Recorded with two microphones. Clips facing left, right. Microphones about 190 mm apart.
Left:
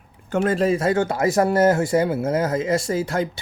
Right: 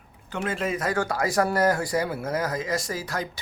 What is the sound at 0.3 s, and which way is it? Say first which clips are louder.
Speech: left 9 dB; 45° left (ahead or behind).